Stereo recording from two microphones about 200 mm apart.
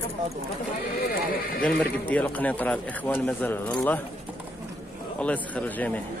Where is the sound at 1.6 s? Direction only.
5° left (ahead or behind).